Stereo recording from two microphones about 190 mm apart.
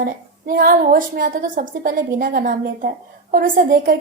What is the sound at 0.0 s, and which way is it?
A woman's voice, 50° right (ahead or behind).